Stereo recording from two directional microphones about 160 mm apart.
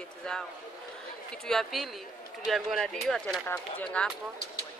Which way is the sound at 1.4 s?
Centre (ahead or behind).